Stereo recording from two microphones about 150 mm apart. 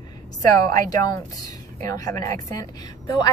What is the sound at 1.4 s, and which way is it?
A woman's voice, 25° left (ahead or behind).